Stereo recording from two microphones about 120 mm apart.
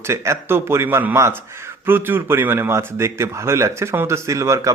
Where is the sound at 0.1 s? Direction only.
20° right (ahead or behind).